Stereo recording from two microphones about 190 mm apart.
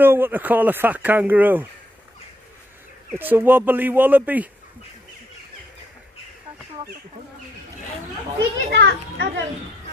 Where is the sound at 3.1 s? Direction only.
10° right (ahead or behind).